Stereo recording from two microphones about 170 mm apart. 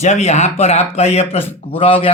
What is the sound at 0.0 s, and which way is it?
Speech, 40° left (ahead or behind).